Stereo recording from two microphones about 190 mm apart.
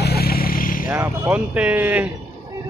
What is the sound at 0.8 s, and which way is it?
Speech, 10° right (ahead or behind).